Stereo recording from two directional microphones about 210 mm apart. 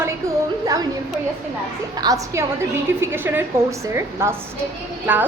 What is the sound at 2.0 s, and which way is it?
A woman's voice, 15° right (ahead or behind).